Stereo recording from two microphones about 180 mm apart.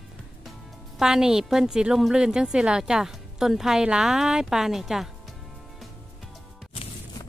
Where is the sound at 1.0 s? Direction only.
5° right (ahead or behind).